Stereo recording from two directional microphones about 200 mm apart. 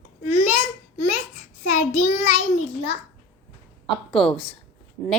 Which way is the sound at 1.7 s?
35° left (ahead or behind).